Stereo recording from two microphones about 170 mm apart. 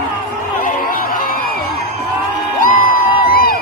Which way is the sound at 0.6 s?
55° left (ahead or behind).